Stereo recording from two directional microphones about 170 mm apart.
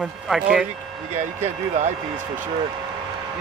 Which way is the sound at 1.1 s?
45° right (ahead or behind).